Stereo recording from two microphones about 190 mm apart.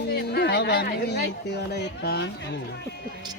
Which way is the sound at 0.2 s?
60° left (ahead or behind).